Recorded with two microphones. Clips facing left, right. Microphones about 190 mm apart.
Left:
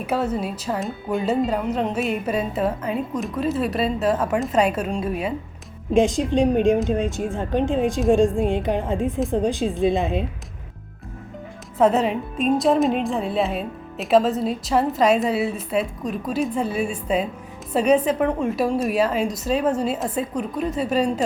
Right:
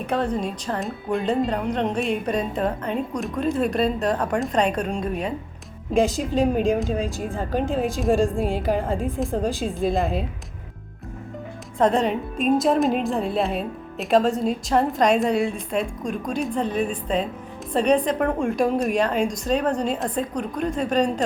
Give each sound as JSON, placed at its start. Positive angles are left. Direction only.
{"t": 0.0, "sound": "speech", "side_deg": 5}
{"t": 11.8, "sound": "a woman's voice", "side_deg": 5}